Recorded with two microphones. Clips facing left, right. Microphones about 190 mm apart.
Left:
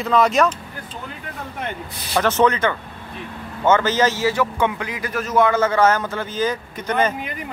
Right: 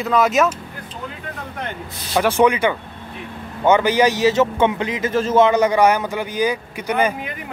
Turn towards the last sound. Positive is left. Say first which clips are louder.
# right 1 dB
turn(degrees=-10)  # may be behind; listen again after turning